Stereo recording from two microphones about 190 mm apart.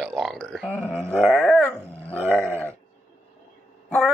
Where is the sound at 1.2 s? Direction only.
5° right (ahead or behind).